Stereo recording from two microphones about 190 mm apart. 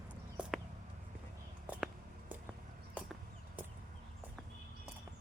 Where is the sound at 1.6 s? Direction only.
5° right (ahead or behind).